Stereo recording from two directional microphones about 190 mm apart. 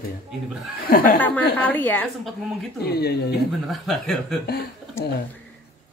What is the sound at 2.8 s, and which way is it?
Speech, 55° left (ahead or behind).